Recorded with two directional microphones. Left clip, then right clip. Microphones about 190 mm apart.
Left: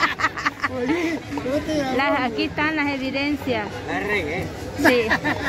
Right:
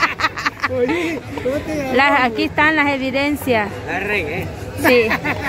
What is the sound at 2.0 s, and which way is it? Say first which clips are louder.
A woman's voice: right 10 dB; 10° right (ahead or behind).